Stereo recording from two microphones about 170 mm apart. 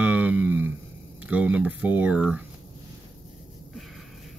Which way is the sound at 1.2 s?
10° right (ahead or behind).